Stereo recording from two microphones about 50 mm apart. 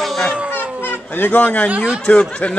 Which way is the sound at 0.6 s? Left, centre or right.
Left.